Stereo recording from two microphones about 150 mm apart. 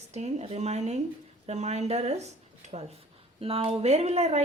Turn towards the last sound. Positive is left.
turn(degrees=-45)  # may be behind; listen again after turning